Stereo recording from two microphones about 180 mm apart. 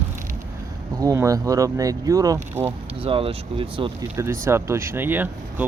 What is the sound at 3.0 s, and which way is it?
Speech, 30° right (ahead or behind).